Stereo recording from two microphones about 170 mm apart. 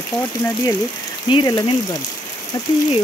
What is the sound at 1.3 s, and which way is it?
Speech, 25° left (ahead or behind).